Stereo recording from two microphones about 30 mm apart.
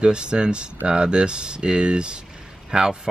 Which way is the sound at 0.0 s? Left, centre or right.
Right.